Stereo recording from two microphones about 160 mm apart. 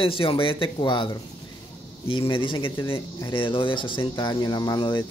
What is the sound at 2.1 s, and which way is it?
Speech, 30° left (ahead or behind).